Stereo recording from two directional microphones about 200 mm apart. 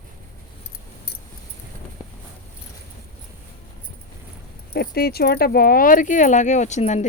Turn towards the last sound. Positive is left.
turn(degrees=35)  # may be behind; listen again after turning